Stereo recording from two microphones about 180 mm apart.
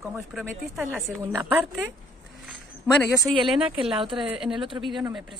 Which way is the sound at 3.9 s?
30° right (ahead or behind).